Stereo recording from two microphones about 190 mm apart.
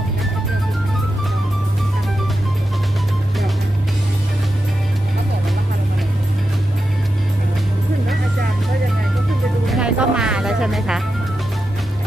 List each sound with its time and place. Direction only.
9.7 s music: 5° right (ahead or behind)